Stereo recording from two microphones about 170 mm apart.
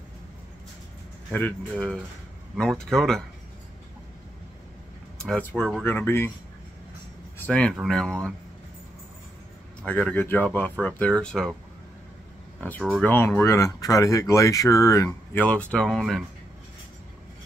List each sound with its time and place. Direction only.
1.3 s speech: 10° left (ahead or behind)
5.2 s speech: 5° left (ahead or behind)
7.3 s speech: 10° left (ahead or behind)
9.8 s speech: 10° left (ahead or behind)
12.5 s speech: 10° left (ahead or behind)
15.4 s speech: 10° left (ahead or behind)